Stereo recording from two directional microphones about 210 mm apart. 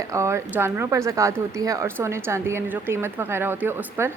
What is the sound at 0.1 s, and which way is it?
A woman's voice, 15° right (ahead or behind).